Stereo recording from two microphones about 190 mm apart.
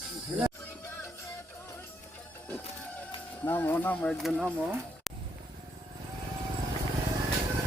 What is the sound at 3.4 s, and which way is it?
Speech, 10° left (ahead or behind).